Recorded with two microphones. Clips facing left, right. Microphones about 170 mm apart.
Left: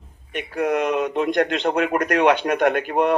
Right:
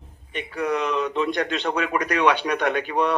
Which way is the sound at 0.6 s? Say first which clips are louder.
Left 3 dB; 50° left (ahead or behind).